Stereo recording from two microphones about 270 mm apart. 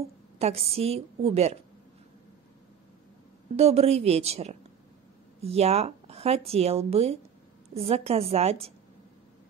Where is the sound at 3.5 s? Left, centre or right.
Right.